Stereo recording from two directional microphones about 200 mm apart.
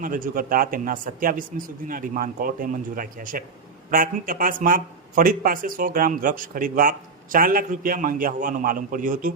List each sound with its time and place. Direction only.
0.0 s speech: 45° right (ahead or behind)